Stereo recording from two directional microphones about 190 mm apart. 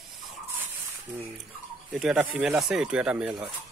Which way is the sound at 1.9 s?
5° right (ahead or behind).